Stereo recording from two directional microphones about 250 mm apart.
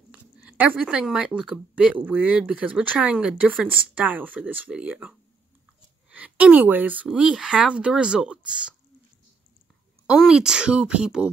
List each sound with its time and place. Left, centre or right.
0.1 s speech: centre
10.0 s speech: centre